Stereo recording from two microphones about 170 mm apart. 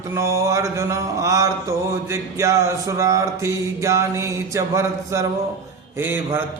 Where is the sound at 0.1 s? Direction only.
15° right (ahead or behind).